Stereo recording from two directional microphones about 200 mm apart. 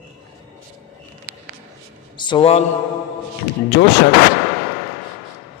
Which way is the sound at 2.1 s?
25° left (ahead or behind).